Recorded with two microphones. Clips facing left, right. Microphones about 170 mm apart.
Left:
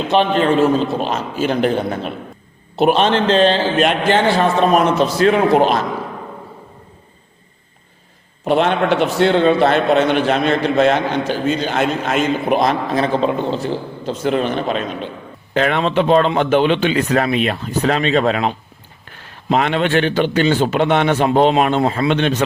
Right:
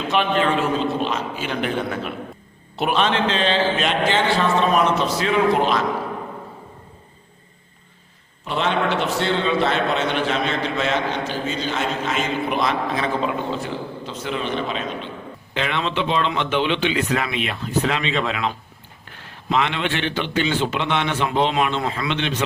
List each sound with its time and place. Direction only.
0.1 s a man's voice: 35° left (ahead or behind)
3.8 s a man's voice: 55° left (ahead or behind)
8.4 s a man's voice: 55° left (ahead or behind)